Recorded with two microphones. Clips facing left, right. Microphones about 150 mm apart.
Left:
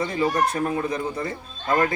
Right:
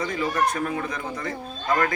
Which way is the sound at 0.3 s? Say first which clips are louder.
Left 2 dB; 30° left (ahead or behind).